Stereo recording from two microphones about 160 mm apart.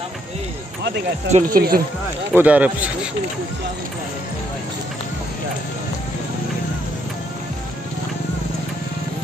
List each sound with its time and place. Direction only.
1.3 s speech: 65° right (ahead or behind)
2.3 s speech: 10° right (ahead or behind)